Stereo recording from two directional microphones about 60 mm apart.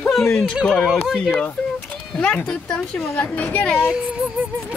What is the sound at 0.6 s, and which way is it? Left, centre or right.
Speech, centre.